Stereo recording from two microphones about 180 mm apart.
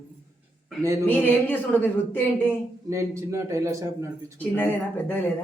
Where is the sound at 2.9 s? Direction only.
15° right (ahead or behind).